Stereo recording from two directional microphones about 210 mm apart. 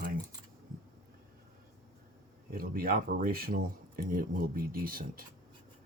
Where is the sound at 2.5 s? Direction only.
45° right (ahead or behind).